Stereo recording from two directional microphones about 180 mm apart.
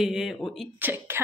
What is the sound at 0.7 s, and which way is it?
Speech, 10° right (ahead or behind).